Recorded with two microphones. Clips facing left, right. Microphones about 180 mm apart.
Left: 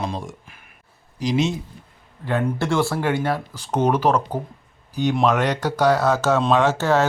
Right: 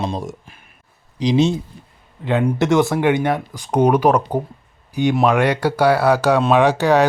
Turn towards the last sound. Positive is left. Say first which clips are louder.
# right 4 dB
turn(degrees=-15)  # may be behind; listen again after turning